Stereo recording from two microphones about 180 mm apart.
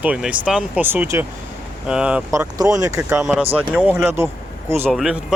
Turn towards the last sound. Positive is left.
turn(degrees=0)  # may be behind; listen again after turning